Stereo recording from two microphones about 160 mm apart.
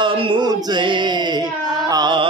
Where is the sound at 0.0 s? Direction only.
35° right (ahead or behind).